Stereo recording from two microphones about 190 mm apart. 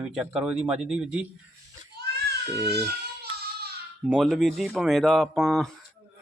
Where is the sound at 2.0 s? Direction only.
60° right (ahead or behind).